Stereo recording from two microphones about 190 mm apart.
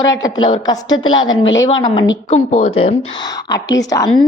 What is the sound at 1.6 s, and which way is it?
Speech, 20° left (ahead or behind).